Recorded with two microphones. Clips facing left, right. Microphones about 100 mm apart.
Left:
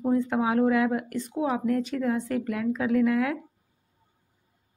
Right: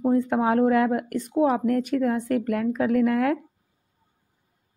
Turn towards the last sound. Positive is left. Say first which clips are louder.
# right 2 dB
turn(degrees=-45)  # may be behind; listen again after turning